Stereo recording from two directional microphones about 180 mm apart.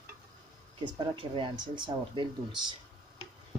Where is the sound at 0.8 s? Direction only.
25° right (ahead or behind).